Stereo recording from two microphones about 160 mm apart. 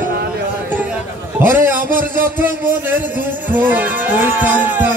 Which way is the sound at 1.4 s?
15° right (ahead or behind).